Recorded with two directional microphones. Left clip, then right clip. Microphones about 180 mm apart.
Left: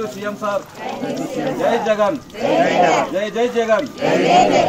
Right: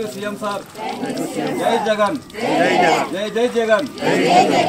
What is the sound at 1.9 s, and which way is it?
Speech, 15° right (ahead or behind).